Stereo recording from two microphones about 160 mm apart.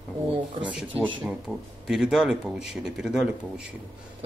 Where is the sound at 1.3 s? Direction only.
5° right (ahead or behind).